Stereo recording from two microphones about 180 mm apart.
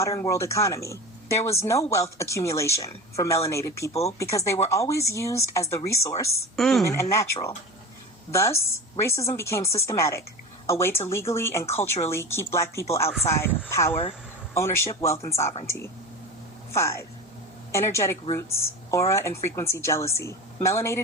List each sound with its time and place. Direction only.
0.0 s speech: 15° left (ahead or behind)
6.6 s speech: centre (ahead or behind)
6.8 s speech: 15° left (ahead or behind)